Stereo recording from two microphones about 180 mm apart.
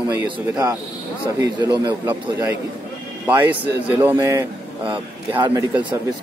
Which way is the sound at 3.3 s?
10° right (ahead or behind).